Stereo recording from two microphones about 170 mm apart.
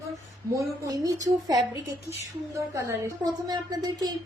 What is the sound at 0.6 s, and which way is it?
A woman's voice, 20° right (ahead or behind).